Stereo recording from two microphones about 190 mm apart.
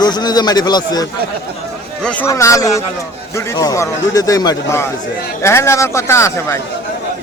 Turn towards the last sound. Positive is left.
turn(degrees=15)  # may be behind; listen again after turning